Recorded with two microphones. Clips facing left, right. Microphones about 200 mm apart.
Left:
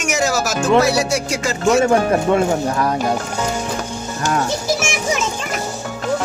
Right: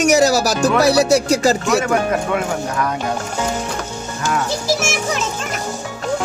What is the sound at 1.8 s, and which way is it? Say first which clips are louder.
Speech: left 3 dB; 30° left (ahead or behind).